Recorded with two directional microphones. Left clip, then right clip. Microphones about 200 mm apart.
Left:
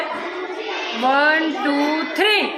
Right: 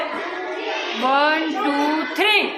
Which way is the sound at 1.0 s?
10° left (ahead or behind).